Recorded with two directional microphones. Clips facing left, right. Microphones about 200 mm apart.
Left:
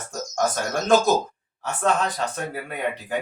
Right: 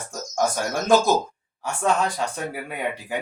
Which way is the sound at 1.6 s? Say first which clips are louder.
Even; 10° right (ahead or behind).